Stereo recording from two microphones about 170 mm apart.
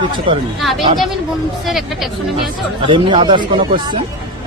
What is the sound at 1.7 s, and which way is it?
Speech, centre (ahead or behind).